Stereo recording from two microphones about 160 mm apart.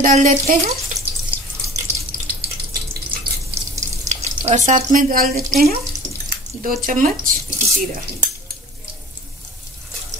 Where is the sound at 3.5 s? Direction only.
45° right (ahead or behind).